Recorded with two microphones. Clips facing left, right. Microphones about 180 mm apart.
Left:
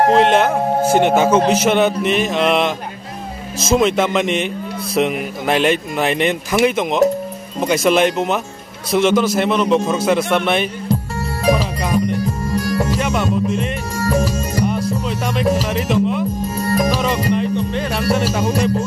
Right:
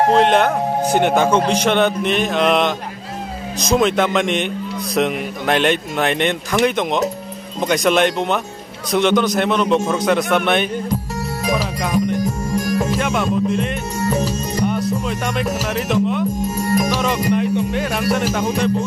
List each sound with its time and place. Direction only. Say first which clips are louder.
0.1 s a man's voice: left 1 dB; centre (ahead or behind)
11.5 s music: left 1 dB; centre (ahead or behind)
12.4 s music: even; 20° right (ahead or behind)
13.0 s music: even; centre (ahead or behind)
16.5 s music: left 2 dB; 15° right (ahead or behind); by 18.5 s 5° left (ahead or behind)